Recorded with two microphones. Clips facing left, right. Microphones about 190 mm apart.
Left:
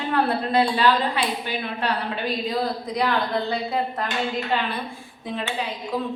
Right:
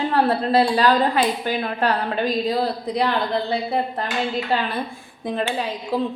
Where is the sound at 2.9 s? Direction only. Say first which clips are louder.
Right 1 dB; 30° right (ahead or behind).